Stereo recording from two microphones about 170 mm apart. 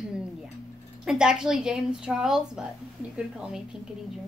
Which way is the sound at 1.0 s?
5° right (ahead or behind).